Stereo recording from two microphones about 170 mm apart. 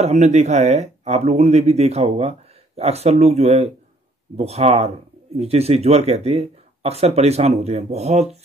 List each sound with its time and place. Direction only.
0.0 s speech: 40° right (ahead or behind)